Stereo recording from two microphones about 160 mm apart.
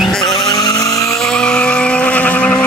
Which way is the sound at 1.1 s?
5° left (ahead or behind).